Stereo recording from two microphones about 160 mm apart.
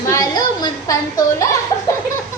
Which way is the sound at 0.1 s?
25° left (ahead or behind).